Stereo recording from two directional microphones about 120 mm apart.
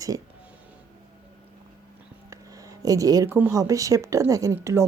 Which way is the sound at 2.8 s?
30° right (ahead or behind).